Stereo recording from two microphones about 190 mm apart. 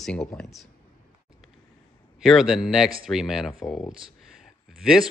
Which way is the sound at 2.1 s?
Centre (ahead or behind).